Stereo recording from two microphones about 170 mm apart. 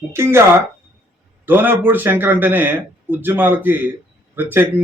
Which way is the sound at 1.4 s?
10° right (ahead or behind).